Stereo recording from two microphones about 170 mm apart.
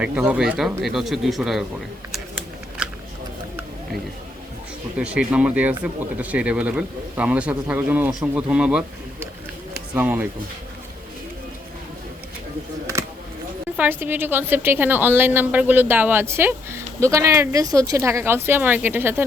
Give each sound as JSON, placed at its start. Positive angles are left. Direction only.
{"t": 0.0, "sound": "speech", "side_deg": -5}
{"t": 4.9, "sound": "a woman's voice", "side_deg": -5}
{"t": 13.7, "sound": "a woman's voice", "side_deg": -10}